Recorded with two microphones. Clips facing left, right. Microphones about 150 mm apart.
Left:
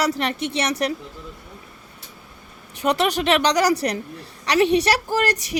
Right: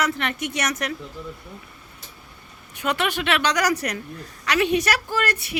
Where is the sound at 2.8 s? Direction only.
35° left (ahead or behind).